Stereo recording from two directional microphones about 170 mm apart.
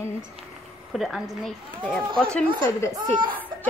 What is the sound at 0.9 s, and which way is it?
A woman's voice, centre (ahead or behind).